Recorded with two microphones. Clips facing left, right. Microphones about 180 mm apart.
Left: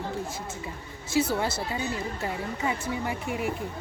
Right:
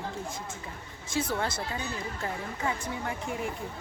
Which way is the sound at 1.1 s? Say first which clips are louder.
Left 5 dB; 5° left (ahead or behind).